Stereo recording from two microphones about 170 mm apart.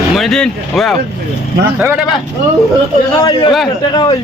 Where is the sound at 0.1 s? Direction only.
Centre (ahead or behind).